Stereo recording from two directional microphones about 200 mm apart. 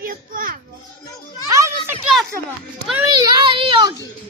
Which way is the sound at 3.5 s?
25° right (ahead or behind).